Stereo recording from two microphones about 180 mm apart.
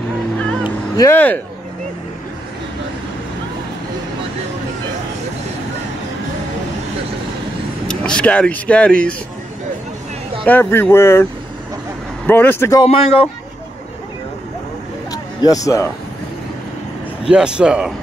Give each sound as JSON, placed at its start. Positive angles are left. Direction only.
{"t": 0.7, "sound": "music", "side_deg": 20}
{"t": 1.1, "sound": "speech", "side_deg": 10}
{"t": 7.9, "sound": "speech", "side_deg": 5}
{"t": 10.4, "sound": "speech", "side_deg": 10}
{"t": 12.3, "sound": "speech", "side_deg": 10}
{"t": 12.8, "sound": "speech", "side_deg": 30}
{"t": 15.0, "sound": "a sound", "side_deg": 20}
{"t": 17.3, "sound": "speech", "side_deg": -5}